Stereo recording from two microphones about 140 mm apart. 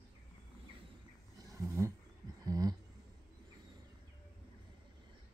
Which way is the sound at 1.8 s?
20° right (ahead or behind).